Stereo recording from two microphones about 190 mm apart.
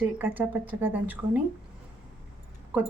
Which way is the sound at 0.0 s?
10° right (ahead or behind).